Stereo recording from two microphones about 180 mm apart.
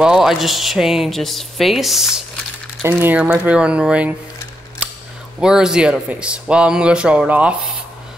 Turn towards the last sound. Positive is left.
turn(degrees=-5)  # may be behind; listen again after turning